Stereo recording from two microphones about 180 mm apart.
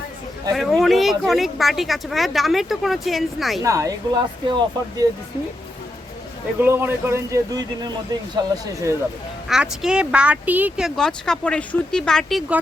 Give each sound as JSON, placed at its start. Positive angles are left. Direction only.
{"t": 0.5, "sound": "speech", "side_deg": 0}
{"t": 3.6, "sound": "speech", "side_deg": -15}
{"t": 6.6, "sound": "speech", "side_deg": -10}
{"t": 9.5, "sound": "speech", "side_deg": -5}